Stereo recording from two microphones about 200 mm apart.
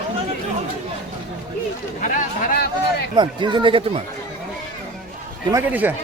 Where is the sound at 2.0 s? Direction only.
40° left (ahead or behind).